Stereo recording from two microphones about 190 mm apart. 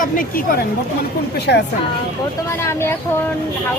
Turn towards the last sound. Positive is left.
turn(degrees=10)  # may be behind; listen again after turning